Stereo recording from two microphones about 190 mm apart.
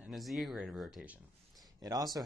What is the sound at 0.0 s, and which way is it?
Speech, centre (ahead or behind).